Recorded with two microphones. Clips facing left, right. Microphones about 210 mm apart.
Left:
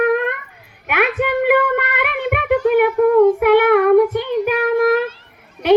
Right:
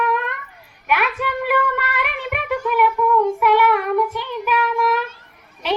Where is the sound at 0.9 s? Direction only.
55° left (ahead or behind).